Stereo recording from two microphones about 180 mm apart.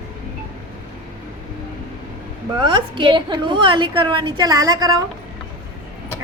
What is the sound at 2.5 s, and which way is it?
A woman's voice, 25° right (ahead or behind).